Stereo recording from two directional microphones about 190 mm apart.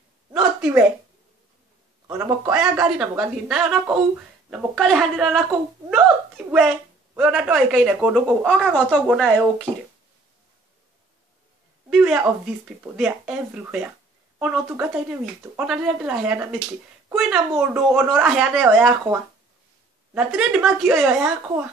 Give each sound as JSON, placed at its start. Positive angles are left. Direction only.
{"t": 0.3, "sound": "a sound", "side_deg": -5}
{"t": 2.0, "sound": "speech", "side_deg": -15}
{"t": 2.5, "sound": "speech", "side_deg": -5}
{"t": 11.9, "sound": "speech", "side_deg": -5}